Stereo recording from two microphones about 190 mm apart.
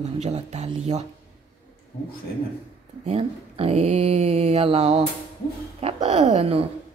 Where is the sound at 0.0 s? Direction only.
35° right (ahead or behind).